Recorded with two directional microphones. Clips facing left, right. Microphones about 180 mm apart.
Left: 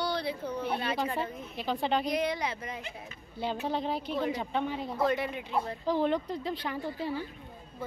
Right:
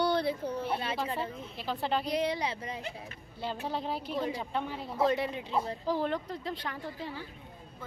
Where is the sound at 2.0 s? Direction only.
30° right (ahead or behind).